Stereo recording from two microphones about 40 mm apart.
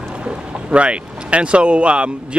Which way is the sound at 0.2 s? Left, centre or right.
Right.